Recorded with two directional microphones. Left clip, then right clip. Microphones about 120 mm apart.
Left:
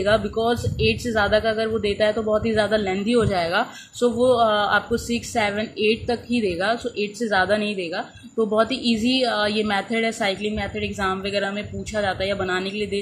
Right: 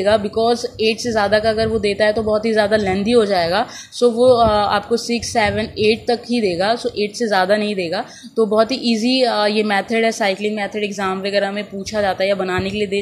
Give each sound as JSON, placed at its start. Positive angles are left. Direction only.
{"t": 0.0, "sound": "speech", "side_deg": -35}